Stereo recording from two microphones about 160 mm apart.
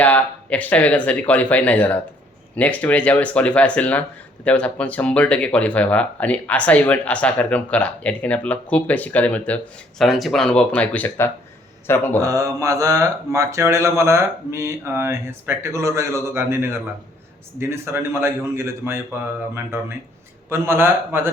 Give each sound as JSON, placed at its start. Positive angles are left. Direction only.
{"t": 0.0, "sound": "speech", "side_deg": 10}
{"t": 12.2, "sound": "speech", "side_deg": -20}